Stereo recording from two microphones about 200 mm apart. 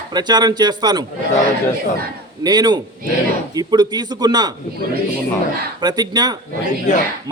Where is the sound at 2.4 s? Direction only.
20° right (ahead or behind).